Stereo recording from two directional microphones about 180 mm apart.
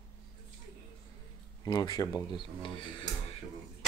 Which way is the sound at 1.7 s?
20° left (ahead or behind).